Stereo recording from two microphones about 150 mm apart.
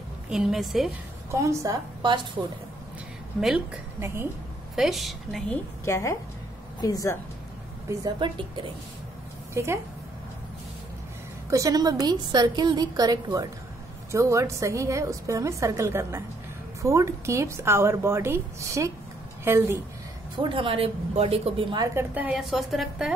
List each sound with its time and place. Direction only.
0.3 s a woman's voice: 5° right (ahead or behind)
1.3 s a woman's voice: 20° right (ahead or behind)
3.3 s a woman's voice: 5° right (ahead or behind)
4.0 s a woman's voice: 15° right (ahead or behind)
4.7 s a woman's voice: centre (ahead or behind)
5.9 s speech: 20° left (ahead or behind)
8.0 s a woman's voice: 30° right (ahead or behind)
9.5 s speech: 20° right (ahead or behind)
11.5 s a woman's voice: 25° right (ahead or behind)
20.3 s a woman's voice: 35° right (ahead or behind)
21.8 s a woman's voice: 15° right (ahead or behind)